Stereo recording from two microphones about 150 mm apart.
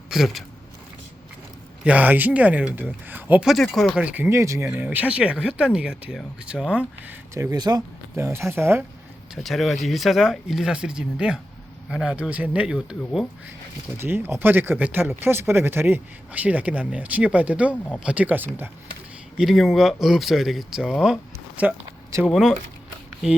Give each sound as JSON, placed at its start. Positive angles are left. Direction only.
{"t": 0.1, "sound": "speech", "side_deg": 0}
{"t": 1.8, "sound": "speech", "side_deg": -10}
{"t": 3.5, "sound": "speech", "side_deg": 0}
{"t": 7.3, "sound": "speech", "side_deg": -25}
{"t": 9.3, "sound": "speech", "side_deg": 0}
{"t": 19.4, "sound": "speech", "side_deg": 0}